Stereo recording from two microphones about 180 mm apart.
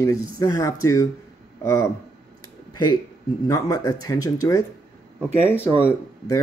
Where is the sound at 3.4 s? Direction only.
20° left (ahead or behind).